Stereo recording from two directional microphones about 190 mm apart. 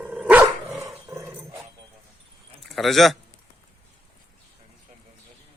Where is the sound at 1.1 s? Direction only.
15° right (ahead or behind).